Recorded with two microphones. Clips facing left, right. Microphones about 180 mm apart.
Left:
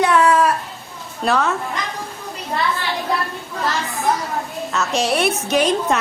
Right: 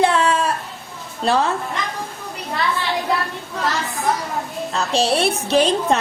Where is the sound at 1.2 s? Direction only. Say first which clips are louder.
Even; 30° right (ahead or behind).